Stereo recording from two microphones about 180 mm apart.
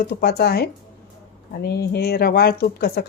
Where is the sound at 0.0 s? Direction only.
60° left (ahead or behind).